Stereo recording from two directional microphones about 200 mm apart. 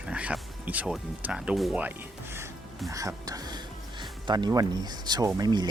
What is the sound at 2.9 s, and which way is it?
Speech, 15° right (ahead or behind).